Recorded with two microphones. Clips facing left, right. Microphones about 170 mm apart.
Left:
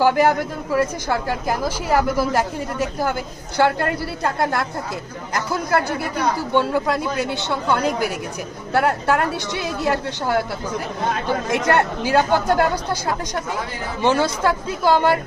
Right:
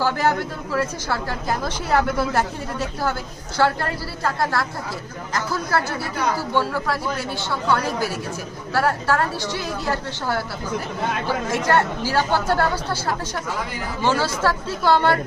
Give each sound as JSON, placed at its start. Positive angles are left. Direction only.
{"t": 0.0, "sound": "a woman's voice", "side_deg": 15}
{"t": 4.2, "sound": "a woman's voice", "side_deg": 20}
{"t": 11.5, "sound": "a woman's voice", "side_deg": 20}
{"t": 14.0, "sound": "a woman's voice", "side_deg": 20}